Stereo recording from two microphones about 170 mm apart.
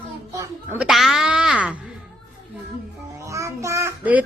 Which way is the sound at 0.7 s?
Centre (ahead or behind).